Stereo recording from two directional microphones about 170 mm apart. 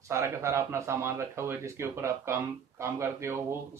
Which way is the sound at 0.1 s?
15° right (ahead or behind).